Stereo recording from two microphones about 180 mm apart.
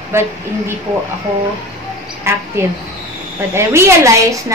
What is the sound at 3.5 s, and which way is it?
Speech, 15° right (ahead or behind).